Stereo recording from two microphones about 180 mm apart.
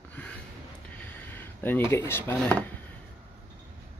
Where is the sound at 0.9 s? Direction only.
10° left (ahead or behind).